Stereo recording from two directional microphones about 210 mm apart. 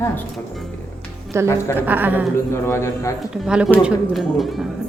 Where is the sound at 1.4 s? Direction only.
15° right (ahead or behind).